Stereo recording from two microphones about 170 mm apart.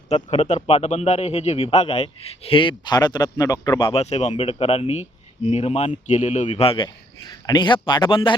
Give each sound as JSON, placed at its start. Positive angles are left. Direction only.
{"t": 0.1, "sound": "a man's voice", "side_deg": 40}